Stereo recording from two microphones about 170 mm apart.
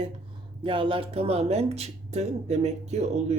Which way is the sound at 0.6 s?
30° right (ahead or behind).